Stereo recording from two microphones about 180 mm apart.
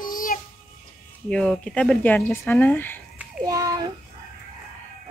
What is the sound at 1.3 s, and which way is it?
Speech, 5° left (ahead or behind).